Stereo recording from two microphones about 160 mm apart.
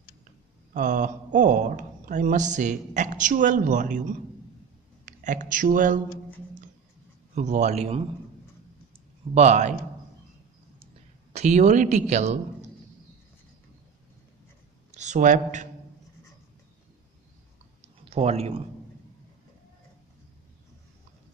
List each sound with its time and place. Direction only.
0.7 s a man's voice: 50° right (ahead or behind)
5.0 s speech: 55° right (ahead or behind)
7.3 s a man's voice: 50° right (ahead or behind)
9.3 s a man's voice: 45° right (ahead or behind)
11.3 s a man's voice: 45° right (ahead or behind)
15.0 s speech: 50° right (ahead or behind)
18.1 s speech: 40° right (ahead or behind)